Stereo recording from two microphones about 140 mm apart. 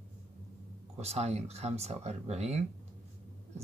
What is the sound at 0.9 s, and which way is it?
Speech, 50° right (ahead or behind).